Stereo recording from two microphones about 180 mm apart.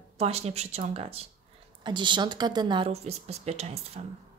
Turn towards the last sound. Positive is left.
turn(degrees=-35)  # may be behind; listen again after turning